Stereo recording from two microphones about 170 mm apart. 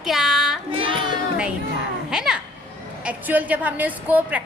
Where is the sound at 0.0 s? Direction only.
Centre (ahead or behind).